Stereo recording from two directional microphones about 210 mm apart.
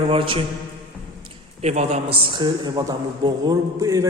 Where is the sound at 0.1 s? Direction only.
25° right (ahead or behind).